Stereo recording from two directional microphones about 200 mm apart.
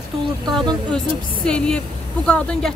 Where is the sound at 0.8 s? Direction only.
5° left (ahead or behind).